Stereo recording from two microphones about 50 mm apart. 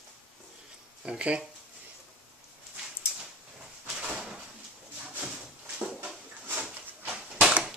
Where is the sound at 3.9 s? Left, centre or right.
Centre.